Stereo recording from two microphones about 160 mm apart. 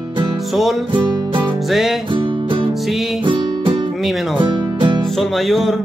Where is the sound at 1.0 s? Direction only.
25° right (ahead or behind).